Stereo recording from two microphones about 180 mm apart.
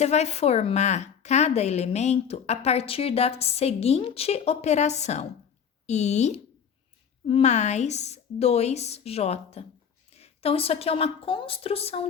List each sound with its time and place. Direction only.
0.0 s a woman's voice: 35° left (ahead or behind)